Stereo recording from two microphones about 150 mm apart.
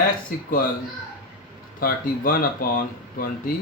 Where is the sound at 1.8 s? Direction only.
75° left (ahead or behind).